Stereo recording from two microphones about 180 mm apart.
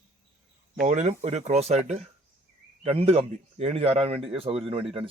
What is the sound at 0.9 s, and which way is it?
Speech, 40° right (ahead or behind).